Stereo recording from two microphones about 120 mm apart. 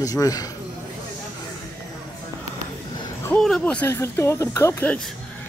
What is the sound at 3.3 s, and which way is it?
Speech, 10° left (ahead or behind).